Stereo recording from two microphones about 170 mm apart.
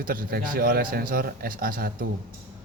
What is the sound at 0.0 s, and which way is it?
A man's voice, 55° right (ahead or behind).